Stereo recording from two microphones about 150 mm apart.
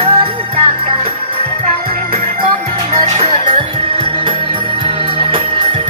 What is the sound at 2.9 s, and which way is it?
Music, 40° right (ahead or behind).